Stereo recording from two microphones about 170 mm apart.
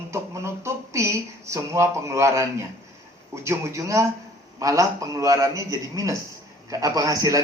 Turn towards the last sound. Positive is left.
turn(degrees=-20)  # may be behind; listen again after turning